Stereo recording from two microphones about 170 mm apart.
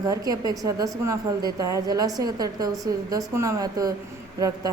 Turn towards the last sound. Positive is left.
turn(degrees=-20)  # may be behind; listen again after turning